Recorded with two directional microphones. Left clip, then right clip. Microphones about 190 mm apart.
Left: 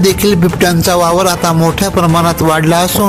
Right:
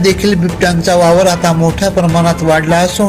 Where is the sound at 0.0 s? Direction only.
45° left (ahead or behind).